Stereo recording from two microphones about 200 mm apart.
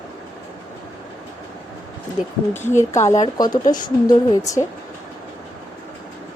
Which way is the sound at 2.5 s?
10° left (ahead or behind).